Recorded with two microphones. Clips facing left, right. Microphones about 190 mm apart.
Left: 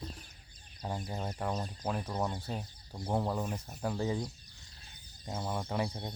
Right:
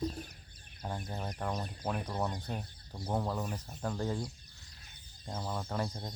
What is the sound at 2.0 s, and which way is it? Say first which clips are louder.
Speech: left 1 dB; centre (ahead or behind).